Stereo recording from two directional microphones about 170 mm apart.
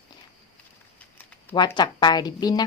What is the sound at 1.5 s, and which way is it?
A woman's voice, 25° left (ahead or behind).